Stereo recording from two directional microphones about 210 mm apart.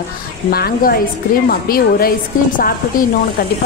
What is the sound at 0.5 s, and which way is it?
A woman's voice, 45° left (ahead or behind).